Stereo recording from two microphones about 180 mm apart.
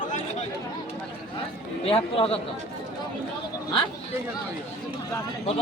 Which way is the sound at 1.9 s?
30° left (ahead or behind).